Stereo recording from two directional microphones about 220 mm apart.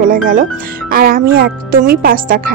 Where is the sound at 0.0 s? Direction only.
40° right (ahead or behind).